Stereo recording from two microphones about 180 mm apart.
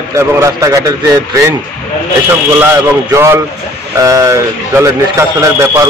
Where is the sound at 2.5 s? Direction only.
15° right (ahead or behind).